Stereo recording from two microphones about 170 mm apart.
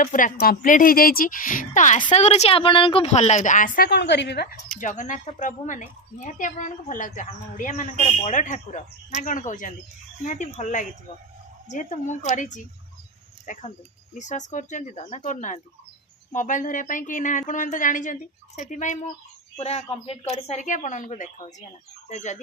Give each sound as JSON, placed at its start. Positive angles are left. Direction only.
{"t": 0.0, "sound": "a woman's voice", "side_deg": 50}
{"t": 4.8, "sound": "a woman's voice", "side_deg": 50}